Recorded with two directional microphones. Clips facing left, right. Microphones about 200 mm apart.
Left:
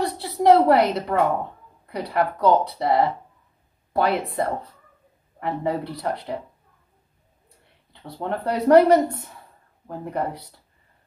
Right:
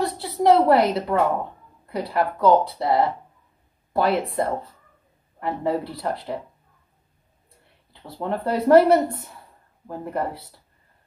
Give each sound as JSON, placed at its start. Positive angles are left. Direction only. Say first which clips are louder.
{"t": 0.0, "sound": "a woman's voice", "louder": "even", "side_deg": 0}
{"t": 7.9, "sound": "a woman's voice", "louder": "right 1 dB", "side_deg": 0}